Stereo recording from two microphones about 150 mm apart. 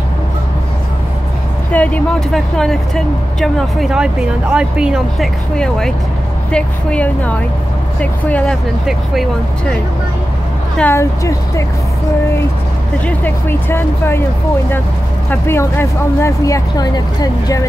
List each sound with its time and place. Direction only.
1.7 s speech: 5° left (ahead or behind)
10.8 s speech: 15° left (ahead or behind)
13.0 s speech: 15° left (ahead or behind)
15.2 s speech: 15° left (ahead or behind)